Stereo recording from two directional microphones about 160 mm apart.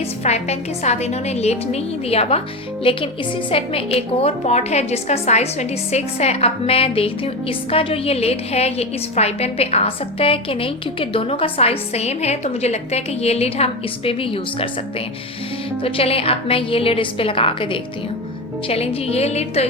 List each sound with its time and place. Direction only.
0.3 s a woman's voice: 45° left (ahead or behind)
15.8 s a woman's voice: 35° left (ahead or behind)